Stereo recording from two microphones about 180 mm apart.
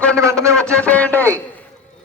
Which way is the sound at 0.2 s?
15° right (ahead or behind).